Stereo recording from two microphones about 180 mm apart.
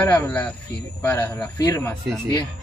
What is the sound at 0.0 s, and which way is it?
Speech, 10° left (ahead or behind).